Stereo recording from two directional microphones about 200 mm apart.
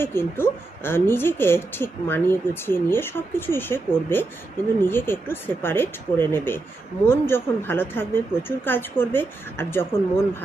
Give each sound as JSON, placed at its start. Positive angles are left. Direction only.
{"t": 0.0, "sound": "a woman's voice", "side_deg": 10}